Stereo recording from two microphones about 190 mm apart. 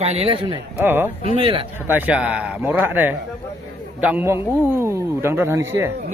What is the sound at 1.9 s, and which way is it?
A man's voice, 10° right (ahead or behind).